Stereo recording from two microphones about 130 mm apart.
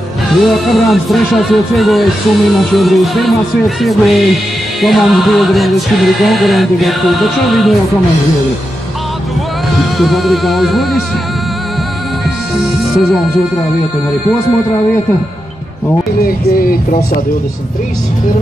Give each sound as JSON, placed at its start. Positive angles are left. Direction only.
{"t": 0.3, "sound": "speech", "side_deg": 0}
{"t": 9.9, "sound": "speech", "side_deg": 0}
{"t": 16.5, "sound": "speech", "side_deg": 90}